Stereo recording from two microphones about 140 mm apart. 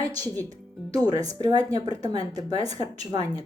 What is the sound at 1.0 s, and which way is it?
Speech, 25° right (ahead or behind).